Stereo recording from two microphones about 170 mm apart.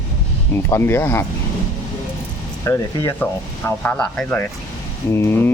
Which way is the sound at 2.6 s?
15° left (ahead or behind).